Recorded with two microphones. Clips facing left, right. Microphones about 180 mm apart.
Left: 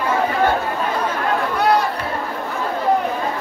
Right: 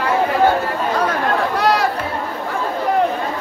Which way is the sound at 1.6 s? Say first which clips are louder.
Left 1 dB; 90° right.